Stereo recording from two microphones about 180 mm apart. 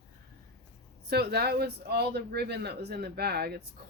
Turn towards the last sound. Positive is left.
turn(degrees=-65)  # may be behind; listen again after turning